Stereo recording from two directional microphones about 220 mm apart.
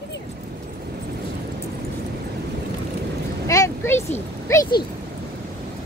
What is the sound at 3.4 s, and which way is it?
Vehicle, 15° left (ahead or behind).